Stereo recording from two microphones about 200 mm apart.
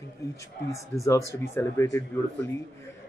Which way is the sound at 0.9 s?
10° left (ahead or behind).